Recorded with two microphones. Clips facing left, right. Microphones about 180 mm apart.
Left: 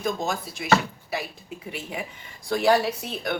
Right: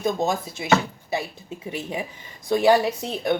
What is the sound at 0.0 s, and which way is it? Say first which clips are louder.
Speech: right 4 dB; 25° right (ahead or behind).